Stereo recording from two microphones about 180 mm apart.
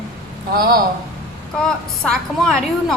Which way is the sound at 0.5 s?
55° right (ahead or behind).